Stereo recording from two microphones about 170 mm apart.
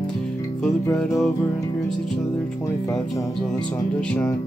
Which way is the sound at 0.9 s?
Centre (ahead or behind).